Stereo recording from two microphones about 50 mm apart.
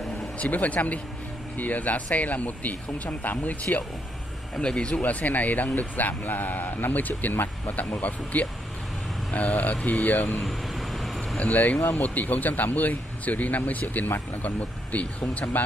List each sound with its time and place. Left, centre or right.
0.4 s speech: left
4.6 s speech: centre
4.9 s speech: left
10.4 s vehicle: centre
11.3 s speech: left